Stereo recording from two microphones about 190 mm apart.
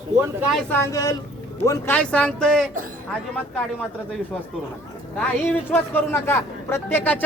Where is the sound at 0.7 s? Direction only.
15° left (ahead or behind).